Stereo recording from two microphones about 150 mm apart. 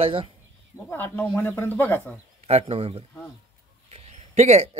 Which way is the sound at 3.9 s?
45° right (ahead or behind).